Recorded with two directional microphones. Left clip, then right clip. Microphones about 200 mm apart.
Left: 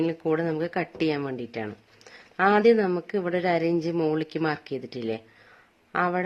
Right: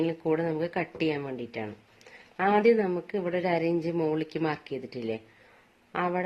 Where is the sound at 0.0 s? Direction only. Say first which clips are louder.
Left 2 dB; 20° left (ahead or behind).